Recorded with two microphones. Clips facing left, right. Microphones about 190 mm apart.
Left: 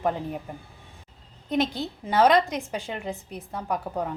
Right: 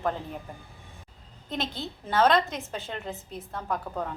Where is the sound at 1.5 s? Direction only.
15° left (ahead or behind).